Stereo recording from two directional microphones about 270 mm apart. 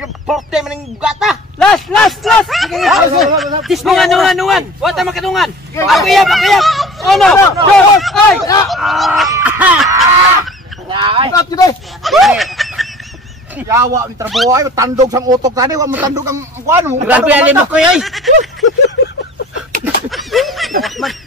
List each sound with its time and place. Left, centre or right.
0.0 s a man's voice: centre
9.3 s fowl: centre
10.9 s speech: centre
11.3 s speech: centre
12.0 s snicker: centre
13.6 s speech: centre
19.8 s a sound: centre
20.8 s goose: centre